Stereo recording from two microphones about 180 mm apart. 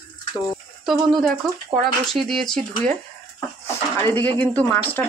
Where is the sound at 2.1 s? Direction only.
Centre (ahead or behind).